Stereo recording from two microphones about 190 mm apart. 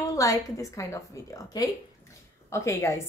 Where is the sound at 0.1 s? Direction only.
15° left (ahead or behind).